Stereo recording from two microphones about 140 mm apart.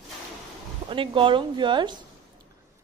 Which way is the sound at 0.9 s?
35° right (ahead or behind).